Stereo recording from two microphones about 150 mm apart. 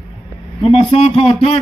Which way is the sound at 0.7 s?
40° left (ahead or behind).